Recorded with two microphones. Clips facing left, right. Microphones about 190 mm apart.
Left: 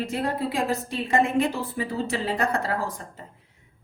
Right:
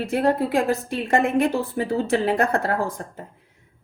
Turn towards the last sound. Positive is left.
turn(degrees=-55)  # may be behind; listen again after turning